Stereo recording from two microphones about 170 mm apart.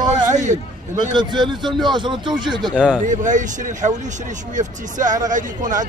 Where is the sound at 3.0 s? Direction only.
50° right (ahead or behind).